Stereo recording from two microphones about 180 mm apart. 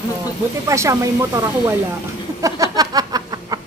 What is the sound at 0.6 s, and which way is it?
A child's voice, 15° right (ahead or behind).